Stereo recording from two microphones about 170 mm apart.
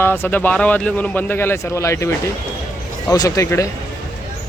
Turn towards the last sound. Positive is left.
turn(degrees=15)  # may be behind; listen again after turning